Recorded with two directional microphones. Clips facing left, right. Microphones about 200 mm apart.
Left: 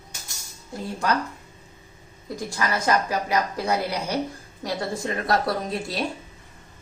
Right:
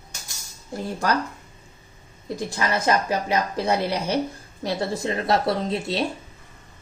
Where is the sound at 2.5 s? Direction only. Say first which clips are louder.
Right 1 dB; 25° right (ahead or behind).